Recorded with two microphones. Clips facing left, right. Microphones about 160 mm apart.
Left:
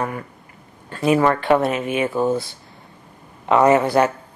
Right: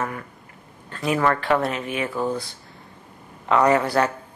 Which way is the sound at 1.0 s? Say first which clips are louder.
Left 5 dB; 20° left (ahead or behind).